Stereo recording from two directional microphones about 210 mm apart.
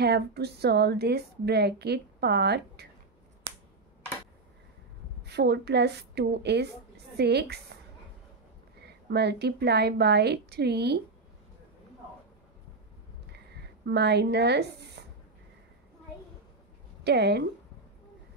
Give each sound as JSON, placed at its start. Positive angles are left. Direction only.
{"t": 0.0, "sound": "a woman's voice", "side_deg": -50}
{"t": 5.2, "sound": "a woman's voice", "side_deg": -50}
{"t": 8.8, "sound": "a woman's voice", "side_deg": -50}
{"t": 13.8, "sound": "a woman's voice", "side_deg": -50}
{"t": 17.0, "sound": "a woman's voice", "side_deg": -50}